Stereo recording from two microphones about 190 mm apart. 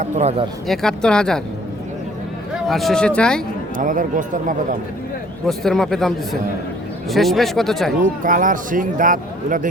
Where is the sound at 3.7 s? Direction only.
45° right (ahead or behind).